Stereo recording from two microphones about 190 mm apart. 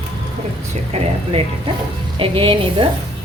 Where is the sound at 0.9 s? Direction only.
35° right (ahead or behind).